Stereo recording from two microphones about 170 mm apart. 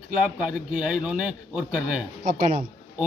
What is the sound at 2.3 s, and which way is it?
Speech, 50° right (ahead or behind).